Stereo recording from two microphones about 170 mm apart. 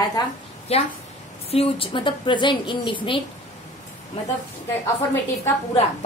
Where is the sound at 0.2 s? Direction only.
25° left (ahead or behind).